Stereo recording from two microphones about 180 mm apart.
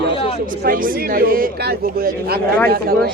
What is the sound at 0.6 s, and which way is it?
A man's voice, 50° right (ahead or behind).